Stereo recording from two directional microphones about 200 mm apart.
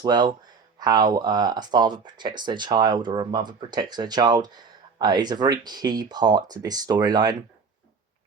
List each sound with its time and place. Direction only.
0.0 s speech: 20° right (ahead or behind)